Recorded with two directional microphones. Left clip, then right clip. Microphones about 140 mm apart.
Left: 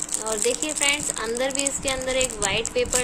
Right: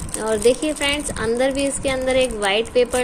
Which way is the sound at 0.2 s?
35° right (ahead or behind).